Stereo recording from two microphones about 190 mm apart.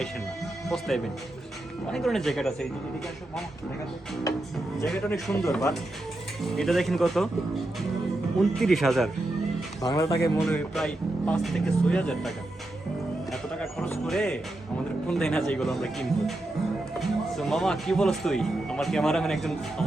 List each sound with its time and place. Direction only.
0.7 s speech: centre (ahead or behind)
4.9 s speech: 5° left (ahead or behind)
8.4 s speech: centre (ahead or behind)
9.8 s speech: 20° left (ahead or behind)
10.3 s speech: 5° left (ahead or behind)
13.3 s music: 5° left (ahead or behind)
14.1 s speech: 5° left (ahead or behind)